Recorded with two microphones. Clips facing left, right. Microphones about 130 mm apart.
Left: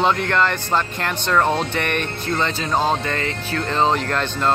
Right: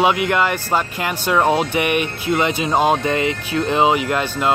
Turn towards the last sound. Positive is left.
turn(degrees=-10)  # may be behind; listen again after turning